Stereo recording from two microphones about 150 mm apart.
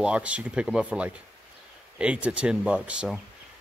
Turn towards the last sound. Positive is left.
turn(degrees=-5)  # may be behind; listen again after turning